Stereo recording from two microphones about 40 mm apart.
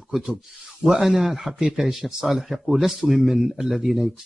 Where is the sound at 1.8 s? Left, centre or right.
Centre.